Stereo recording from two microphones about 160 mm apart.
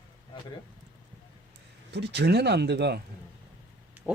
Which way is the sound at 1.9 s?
90° right.